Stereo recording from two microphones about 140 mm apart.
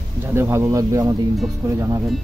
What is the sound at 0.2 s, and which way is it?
Speech, 15° right (ahead or behind).